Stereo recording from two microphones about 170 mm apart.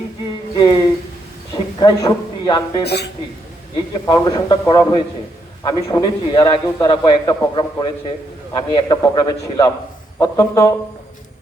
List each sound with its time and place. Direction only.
0.5 s a sound: 25° left (ahead or behind)
1.8 s a man's voice: 25° left (ahead or behind)
2.8 s a woman's voice: 75° left (ahead or behind)
4.0 s a man's voice: 25° left (ahead or behind)